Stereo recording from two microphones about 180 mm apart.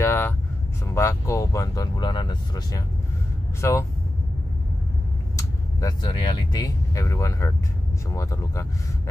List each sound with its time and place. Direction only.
0.0 s vehicle: 15° left (ahead or behind)
0.8 s speech: 15° left (ahead or behind)
5.3 s speech: 20° left (ahead or behind)